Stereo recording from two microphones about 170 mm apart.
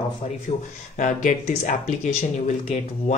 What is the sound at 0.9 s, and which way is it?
Speech, 45° left (ahead or behind).